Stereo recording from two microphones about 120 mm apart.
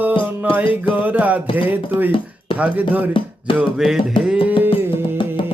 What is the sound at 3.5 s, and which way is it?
Music, 5° right (ahead or behind).